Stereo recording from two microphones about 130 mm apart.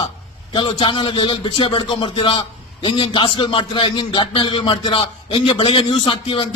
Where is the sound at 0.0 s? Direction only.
40° left (ahead or behind).